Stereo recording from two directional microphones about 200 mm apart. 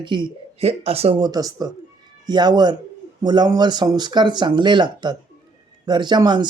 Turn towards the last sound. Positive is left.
turn(degrees=-20)  # may be behind; listen again after turning